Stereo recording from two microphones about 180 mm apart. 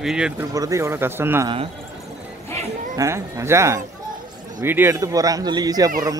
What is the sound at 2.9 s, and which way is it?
A man's voice, 15° right (ahead or behind).